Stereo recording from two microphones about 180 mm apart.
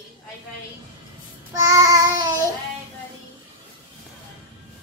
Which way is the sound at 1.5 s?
15° right (ahead or behind).